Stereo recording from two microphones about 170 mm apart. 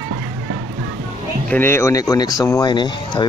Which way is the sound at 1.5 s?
15° left (ahead or behind).